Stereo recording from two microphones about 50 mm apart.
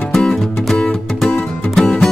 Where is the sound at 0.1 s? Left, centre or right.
Centre.